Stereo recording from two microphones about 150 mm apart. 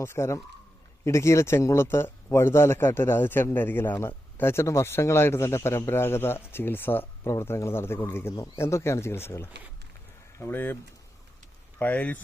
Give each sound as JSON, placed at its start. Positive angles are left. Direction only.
{"t": 0.0, "sound": "speech", "side_deg": 20}
{"t": 11.8, "sound": "speech", "side_deg": 10}